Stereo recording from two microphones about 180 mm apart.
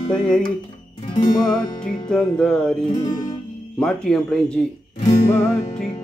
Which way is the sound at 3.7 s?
5° left (ahead or behind).